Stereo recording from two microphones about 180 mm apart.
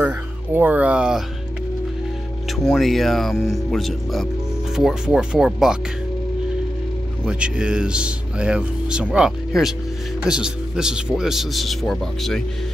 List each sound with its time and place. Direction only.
0.0 s speech: 10° right (ahead or behind)
2.6 s speech: centre (ahead or behind)
7.2 s speech: 5° right (ahead or behind)